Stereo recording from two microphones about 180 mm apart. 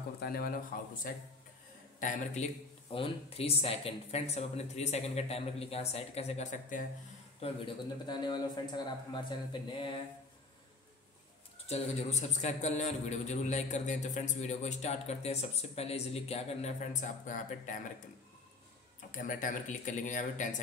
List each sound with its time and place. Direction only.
0.2 s a man's voice: 55° left (ahead or behind)
2.0 s a man's voice: 40° left (ahead or behind)
7.3 s a man's voice: 30° left (ahead or behind)
11.6 s a man's voice: 35° left (ahead or behind)
18.9 s speech: 45° left (ahead or behind)